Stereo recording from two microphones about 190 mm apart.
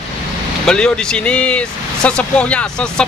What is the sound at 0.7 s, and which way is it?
Speech, 5° left (ahead or behind).